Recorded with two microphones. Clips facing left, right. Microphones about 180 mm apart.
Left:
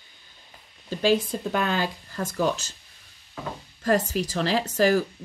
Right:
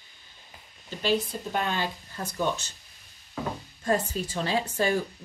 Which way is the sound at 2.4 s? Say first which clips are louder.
Left 3 dB; 90° left.